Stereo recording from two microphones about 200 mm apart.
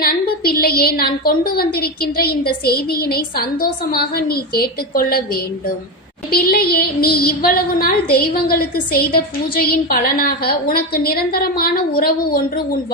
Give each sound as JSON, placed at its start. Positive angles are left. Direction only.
{"t": 0.0, "sound": "a woman's voice", "side_deg": 50}